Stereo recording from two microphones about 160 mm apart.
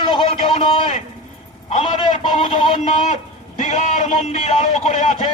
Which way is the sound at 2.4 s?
35° left (ahead or behind).